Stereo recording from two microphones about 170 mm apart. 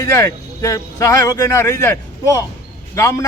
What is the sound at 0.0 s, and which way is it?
A man's voice, 15° left (ahead or behind).